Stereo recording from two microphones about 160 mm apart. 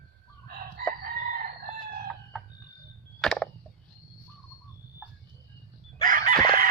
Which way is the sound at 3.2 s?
Centre (ahead or behind).